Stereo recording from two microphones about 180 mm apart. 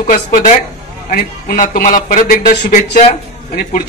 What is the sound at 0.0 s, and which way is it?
Speech, 45° left (ahead or behind).